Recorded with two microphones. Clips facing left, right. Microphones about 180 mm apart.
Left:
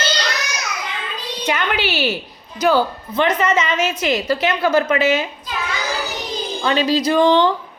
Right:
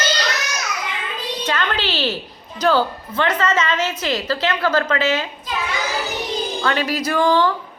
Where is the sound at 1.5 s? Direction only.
15° left (ahead or behind).